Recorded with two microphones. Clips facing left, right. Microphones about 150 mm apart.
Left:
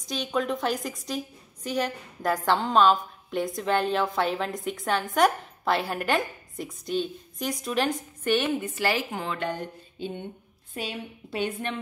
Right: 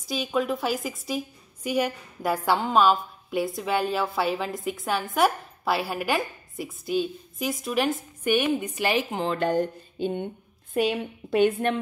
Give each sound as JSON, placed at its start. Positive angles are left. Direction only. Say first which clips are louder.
{"t": 0.1, "sound": "a woman's voice", "louder": "right 2 dB", "side_deg": -5}
{"t": 9.3, "sound": "a sound", "louder": "right 10 dB", "side_deg": -40}
{"t": 10.7, "sound": "a woman's voice", "louder": "right 10 dB", "side_deg": -55}